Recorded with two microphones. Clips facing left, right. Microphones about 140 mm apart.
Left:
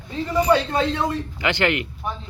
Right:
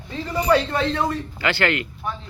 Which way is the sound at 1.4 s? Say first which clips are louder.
Even; 20° left (ahead or behind).